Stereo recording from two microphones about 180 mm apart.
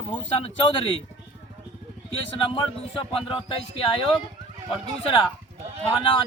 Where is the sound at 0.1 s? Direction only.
30° left (ahead or behind).